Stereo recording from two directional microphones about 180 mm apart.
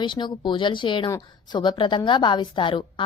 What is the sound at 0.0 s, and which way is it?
A woman's voice, 25° left (ahead or behind).